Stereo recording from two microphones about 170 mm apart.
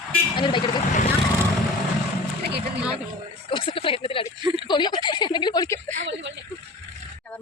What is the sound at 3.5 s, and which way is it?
A woman's voice, 30° left (ahead or behind).